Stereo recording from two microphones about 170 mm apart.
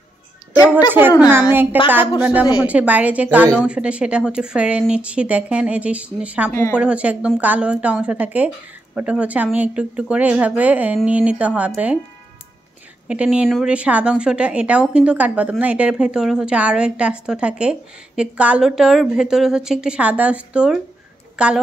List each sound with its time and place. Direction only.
0.6 s a child's voice: 25° left (ahead or behind)
1.5 s a woman's voice: 10° right (ahead or behind)
13.1 s a woman's voice: 5° right (ahead or behind)